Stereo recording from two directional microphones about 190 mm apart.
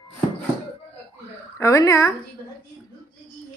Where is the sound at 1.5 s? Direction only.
15° left (ahead or behind).